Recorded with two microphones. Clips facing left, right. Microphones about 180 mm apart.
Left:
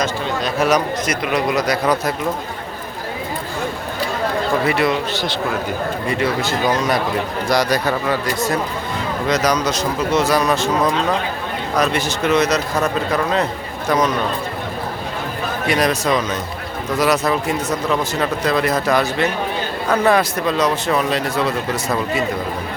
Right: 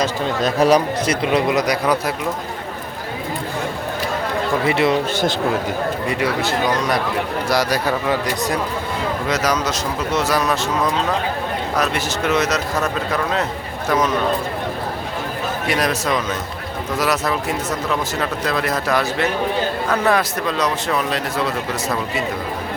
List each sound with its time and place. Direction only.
0.0 s a man's voice: 35° right (ahead or behind); by 2.1 s 10° right (ahead or behind)
4.6 s a man's voice: 25° right (ahead or behind)
6.4 s speech: centre (ahead or behind)
11.8 s speech: 5° right (ahead or behind)
15.7 s speech: centre (ahead or behind)